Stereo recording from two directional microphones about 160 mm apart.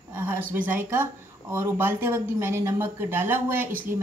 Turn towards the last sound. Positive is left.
turn(degrees=-10)  # may be behind; listen again after turning